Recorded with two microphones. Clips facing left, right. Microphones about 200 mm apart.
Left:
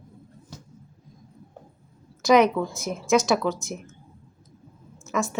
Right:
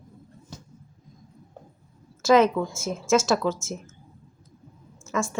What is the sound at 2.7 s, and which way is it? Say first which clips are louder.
Speech: left 1 dB; 15° left (ahead or behind).